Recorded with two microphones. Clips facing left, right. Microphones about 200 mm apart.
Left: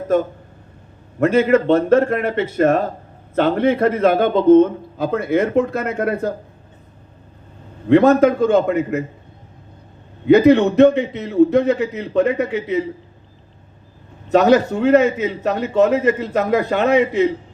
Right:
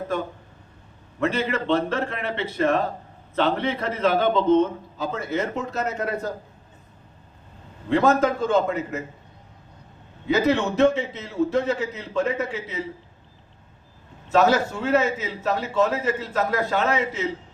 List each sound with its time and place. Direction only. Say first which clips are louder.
1.2 s a man's voice: left 10 dB; 50° left (ahead or behind)
7.9 s a man's voice: left 8 dB; 55° left (ahead or behind)
10.2 s a man's voice: left 10 dB; 60° left (ahead or behind)
14.3 s a man's voice: left 6 dB; 60° left (ahead or behind)